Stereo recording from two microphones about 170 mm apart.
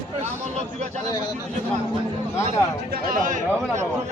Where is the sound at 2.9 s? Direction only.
55° right (ahead or behind).